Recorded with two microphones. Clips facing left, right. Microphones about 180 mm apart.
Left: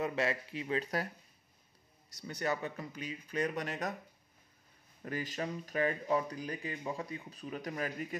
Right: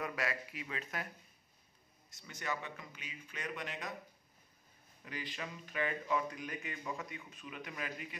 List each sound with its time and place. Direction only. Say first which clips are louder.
0.0 s speech: left 6 dB; 25° left (ahead or behind)
2.0 s speech: left 6 dB; 35° left (ahead or behind)
5.0 s speech: left 7 dB; 45° left (ahead or behind)